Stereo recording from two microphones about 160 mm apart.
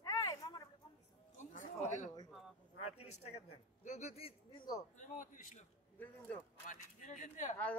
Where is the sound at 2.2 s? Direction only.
Centre (ahead or behind).